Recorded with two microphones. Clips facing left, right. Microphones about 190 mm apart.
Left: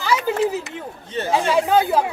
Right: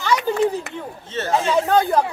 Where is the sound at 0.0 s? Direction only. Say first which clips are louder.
Right 1 dB; 5° left (ahead or behind).